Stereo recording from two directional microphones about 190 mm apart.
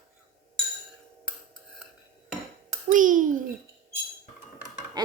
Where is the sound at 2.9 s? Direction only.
45° right (ahead or behind).